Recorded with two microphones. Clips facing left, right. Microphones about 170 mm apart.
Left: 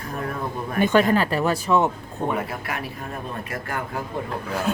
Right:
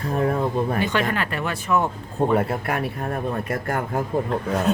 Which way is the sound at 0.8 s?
50° left (ahead or behind).